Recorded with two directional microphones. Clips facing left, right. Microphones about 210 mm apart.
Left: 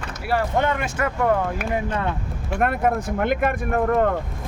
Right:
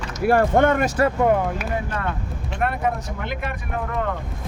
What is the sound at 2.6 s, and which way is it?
Speech, 50° left (ahead or behind).